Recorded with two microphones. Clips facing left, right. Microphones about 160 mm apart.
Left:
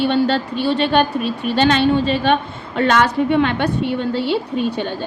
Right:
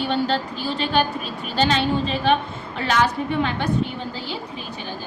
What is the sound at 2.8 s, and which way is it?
A woman's voice, 70° left (ahead or behind).